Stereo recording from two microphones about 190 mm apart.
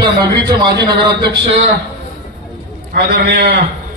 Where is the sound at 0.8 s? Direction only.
65° right (ahead or behind).